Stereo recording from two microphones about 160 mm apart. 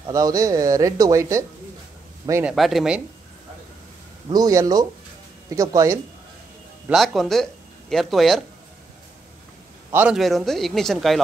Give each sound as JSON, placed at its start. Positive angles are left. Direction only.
{"t": 0.0, "sound": "speech", "side_deg": -20}
{"t": 2.5, "sound": "a man's voice", "side_deg": 0}
{"t": 4.3, "sound": "speech", "side_deg": -20}
{"t": 6.9, "sound": "a man's voice", "side_deg": 0}
{"t": 9.9, "sound": "a man's voice", "side_deg": -5}